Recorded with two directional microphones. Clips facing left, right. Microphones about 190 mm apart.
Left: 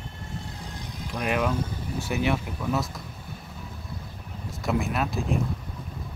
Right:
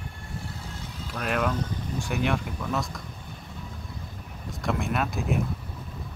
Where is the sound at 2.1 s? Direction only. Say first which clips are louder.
Left 2 dB; 5° left (ahead or behind).